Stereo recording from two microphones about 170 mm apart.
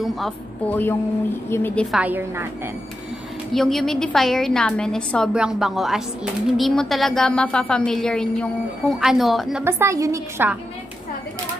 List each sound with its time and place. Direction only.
0.0 s speech: centre (ahead or behind)
1.5 s a woman's voice: 10° left (ahead or behind)
1.9 s a woman's voice: 10° right (ahead or behind)
3.5 s a woman's voice: centre (ahead or behind)
9.7 s a woman's voice: 15° right (ahead or behind)